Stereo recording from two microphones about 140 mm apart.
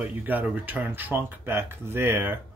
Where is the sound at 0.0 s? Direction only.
10° right (ahead or behind).